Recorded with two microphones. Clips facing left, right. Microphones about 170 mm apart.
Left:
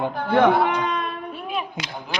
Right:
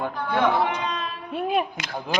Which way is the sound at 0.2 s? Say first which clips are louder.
Left 5 dB; 50° left (ahead or behind).